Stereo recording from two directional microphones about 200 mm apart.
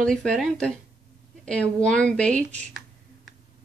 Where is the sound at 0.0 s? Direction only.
5° left (ahead or behind).